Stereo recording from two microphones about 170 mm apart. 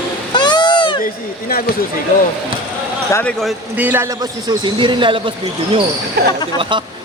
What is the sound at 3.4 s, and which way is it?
A man's voice, 10° right (ahead or behind).